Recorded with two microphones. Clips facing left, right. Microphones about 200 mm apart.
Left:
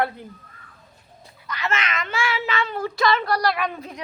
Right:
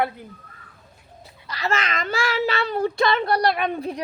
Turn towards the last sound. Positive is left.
turn(degrees=-30)  # may be behind; listen again after turning